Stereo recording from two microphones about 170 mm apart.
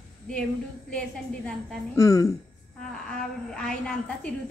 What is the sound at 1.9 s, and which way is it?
Speech, 20° left (ahead or behind).